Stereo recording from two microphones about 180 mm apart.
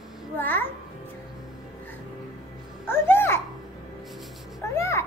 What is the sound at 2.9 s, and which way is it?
Music, 10° left (ahead or behind).